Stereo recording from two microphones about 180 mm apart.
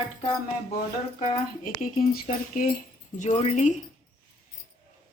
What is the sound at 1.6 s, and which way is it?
Speech, 50° left (ahead or behind).